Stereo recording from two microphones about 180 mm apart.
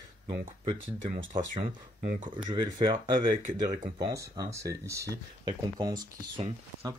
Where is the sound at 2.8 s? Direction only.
25° right (ahead or behind).